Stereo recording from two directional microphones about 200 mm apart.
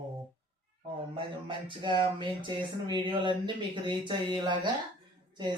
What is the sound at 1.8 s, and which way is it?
Speech, 25° right (ahead or behind).